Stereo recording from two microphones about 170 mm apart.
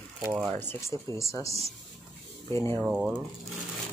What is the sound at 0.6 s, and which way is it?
Speech, 15° left (ahead or behind).